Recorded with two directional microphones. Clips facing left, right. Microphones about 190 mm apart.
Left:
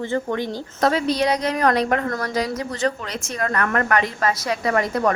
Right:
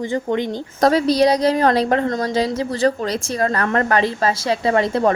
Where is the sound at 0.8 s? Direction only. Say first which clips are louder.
Right 5 dB; 40° right (ahead or behind).